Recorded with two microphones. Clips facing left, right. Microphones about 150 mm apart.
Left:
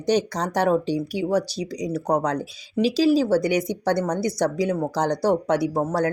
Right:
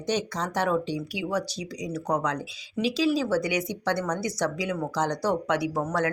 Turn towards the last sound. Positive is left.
turn(degrees=35)  # may be behind; listen again after turning